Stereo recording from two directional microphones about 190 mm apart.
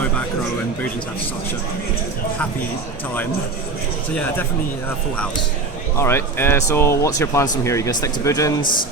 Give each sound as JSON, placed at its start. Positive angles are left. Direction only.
{"t": 6.0, "sound": "speech", "side_deg": 10}